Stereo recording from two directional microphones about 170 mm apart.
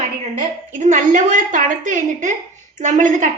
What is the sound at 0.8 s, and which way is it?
A woman's voice, 45° right (ahead or behind).